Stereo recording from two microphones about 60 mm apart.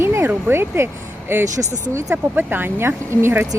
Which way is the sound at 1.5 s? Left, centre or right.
Right.